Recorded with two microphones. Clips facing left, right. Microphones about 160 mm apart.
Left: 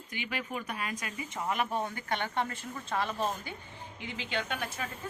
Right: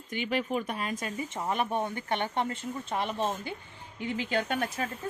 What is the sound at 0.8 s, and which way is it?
Speech, 35° right (ahead or behind).